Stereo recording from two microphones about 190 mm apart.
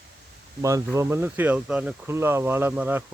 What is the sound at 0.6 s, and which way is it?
Speech, 15° right (ahead or behind).